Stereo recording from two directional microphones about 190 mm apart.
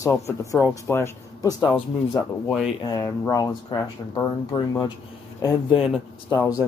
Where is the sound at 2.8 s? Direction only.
20° left (ahead or behind).